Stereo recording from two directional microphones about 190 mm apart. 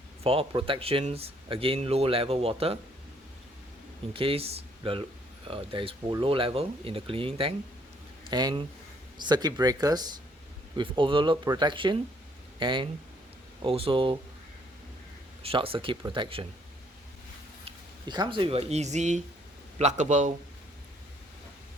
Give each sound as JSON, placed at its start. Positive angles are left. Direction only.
{"t": 0.3, "sound": "speech", "side_deg": -30}
{"t": 4.1, "sound": "speech", "side_deg": -30}
{"t": 15.4, "sound": "speech", "side_deg": -30}
{"t": 17.7, "sound": "speech", "side_deg": -25}